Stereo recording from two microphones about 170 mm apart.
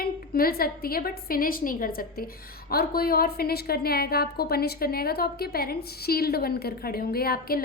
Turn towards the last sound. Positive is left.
turn(degrees=60)  # may be behind; listen again after turning